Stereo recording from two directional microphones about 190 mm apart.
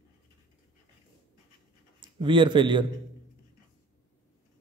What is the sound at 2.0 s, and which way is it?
Speech, 25° right (ahead or behind).